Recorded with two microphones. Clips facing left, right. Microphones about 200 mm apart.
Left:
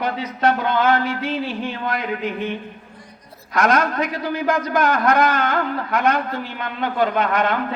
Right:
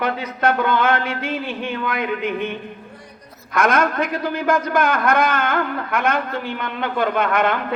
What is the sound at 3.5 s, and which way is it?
A man's voice, 55° right (ahead or behind).